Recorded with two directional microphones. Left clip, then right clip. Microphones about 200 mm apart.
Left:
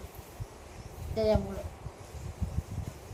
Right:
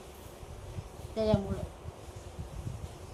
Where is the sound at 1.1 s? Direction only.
5° left (ahead or behind).